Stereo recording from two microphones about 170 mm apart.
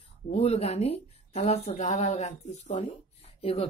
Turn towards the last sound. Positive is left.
turn(degrees=35)  # may be behind; listen again after turning